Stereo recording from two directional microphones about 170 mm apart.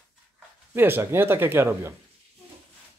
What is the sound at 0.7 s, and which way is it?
Speech, 15° right (ahead or behind).